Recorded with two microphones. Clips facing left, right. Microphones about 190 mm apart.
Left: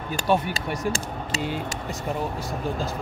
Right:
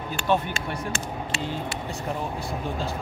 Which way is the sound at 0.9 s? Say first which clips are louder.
Left 1 dB; 40° left (ahead or behind).